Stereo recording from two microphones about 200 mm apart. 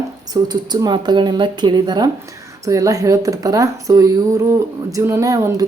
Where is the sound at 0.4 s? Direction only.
20° right (ahead or behind).